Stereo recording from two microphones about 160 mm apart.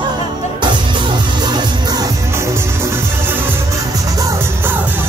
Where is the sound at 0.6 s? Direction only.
30° right (ahead or behind).